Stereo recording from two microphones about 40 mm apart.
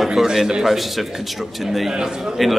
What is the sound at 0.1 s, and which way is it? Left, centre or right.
Speech, centre.